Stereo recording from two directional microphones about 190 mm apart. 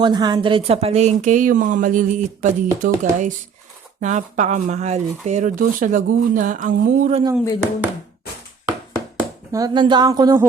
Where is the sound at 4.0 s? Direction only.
40° right (ahead or behind).